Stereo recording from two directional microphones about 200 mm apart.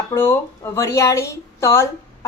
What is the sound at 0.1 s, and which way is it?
A woman's voice, 10° left (ahead or behind).